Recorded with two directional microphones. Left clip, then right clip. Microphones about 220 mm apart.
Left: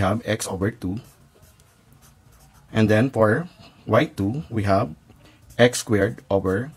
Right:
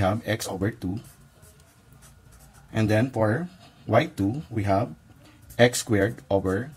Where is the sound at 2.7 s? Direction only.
20° left (ahead or behind).